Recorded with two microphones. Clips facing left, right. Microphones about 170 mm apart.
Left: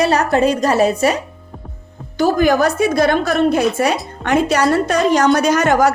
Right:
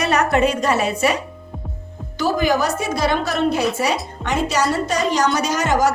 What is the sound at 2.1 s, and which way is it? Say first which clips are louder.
A woman's voice: left 5 dB; 50° left (ahead or behind).